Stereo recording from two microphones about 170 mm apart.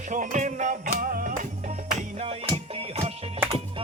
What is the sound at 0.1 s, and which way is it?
Music, 50° right (ahead or behind).